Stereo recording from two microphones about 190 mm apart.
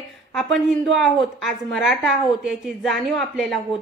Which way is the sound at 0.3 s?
Centre (ahead or behind).